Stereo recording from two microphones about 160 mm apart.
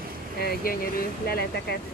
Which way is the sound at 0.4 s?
70° left (ahead or behind).